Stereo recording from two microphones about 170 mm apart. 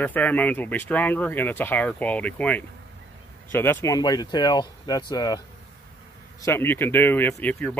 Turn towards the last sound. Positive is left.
turn(degrees=10)  # may be behind; listen again after turning